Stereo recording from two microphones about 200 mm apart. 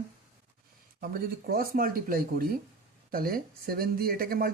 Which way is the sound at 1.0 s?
50° right (ahead or behind).